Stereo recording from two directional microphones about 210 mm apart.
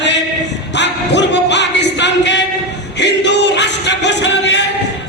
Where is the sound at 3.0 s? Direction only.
55° left (ahead or behind).